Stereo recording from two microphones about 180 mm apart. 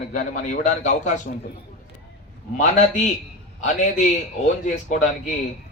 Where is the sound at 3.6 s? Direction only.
45° left (ahead or behind).